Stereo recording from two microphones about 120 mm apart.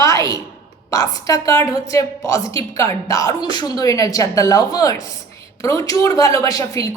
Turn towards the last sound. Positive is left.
turn(degrees=25)  # may be behind; listen again after turning